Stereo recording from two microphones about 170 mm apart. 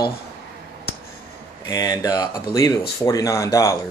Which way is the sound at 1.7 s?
20° left (ahead or behind).